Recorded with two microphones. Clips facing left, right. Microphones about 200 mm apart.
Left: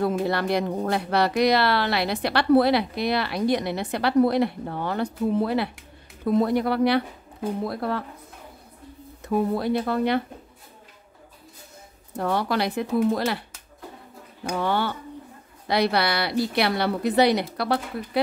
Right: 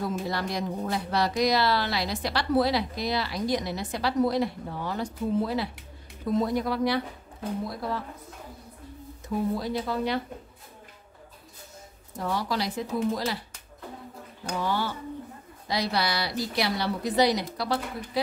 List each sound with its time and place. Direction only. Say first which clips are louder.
0.0 s speech: left 6 dB; 60° left (ahead or behind)
9.3 s speech: left 5 dB; 60° left (ahead or behind)
12.2 s speech: left 5 dB; 60° left (ahead or behind)
14.5 s speech: left 4 dB; 60° left (ahead or behind)